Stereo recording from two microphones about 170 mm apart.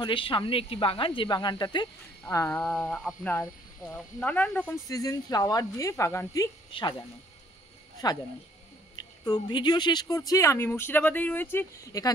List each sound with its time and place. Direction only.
0.0 s speech: 30° left (ahead or behind)
2.2 s speech: 15° left (ahead or behind)
4.8 s speech: 20° left (ahead or behind)
9.2 s speech: 25° left (ahead or behind)